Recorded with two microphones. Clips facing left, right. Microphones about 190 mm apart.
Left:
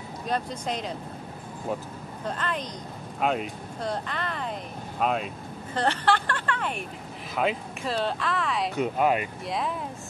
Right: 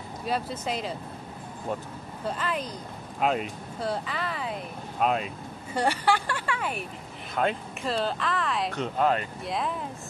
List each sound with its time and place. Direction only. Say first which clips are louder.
0.3 s speech: even; 5° right (ahead or behind)
2.2 s speech: right 1 dB; 5° right (ahead or behind)
5.8 s speech: even; 10° right (ahead or behind); by 9.3 s 10° left (ahead or behind)
9.5 s speech: even; centre (ahead or behind)